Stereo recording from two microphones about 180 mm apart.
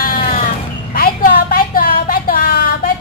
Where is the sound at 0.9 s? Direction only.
55° left (ahead or behind).